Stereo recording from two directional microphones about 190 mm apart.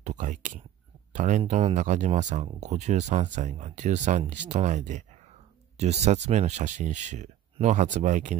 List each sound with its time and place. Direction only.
0.0 s speech: 40° right (ahead or behind)